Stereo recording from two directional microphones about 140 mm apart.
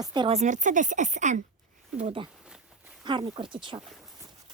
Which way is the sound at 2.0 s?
45° right (ahead or behind).